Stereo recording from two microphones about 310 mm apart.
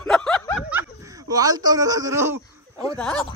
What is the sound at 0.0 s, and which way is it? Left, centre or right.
Snicker, centre.